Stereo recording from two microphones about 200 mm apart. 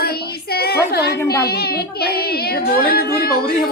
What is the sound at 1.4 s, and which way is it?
A woman's voice, 50° left (ahead or behind).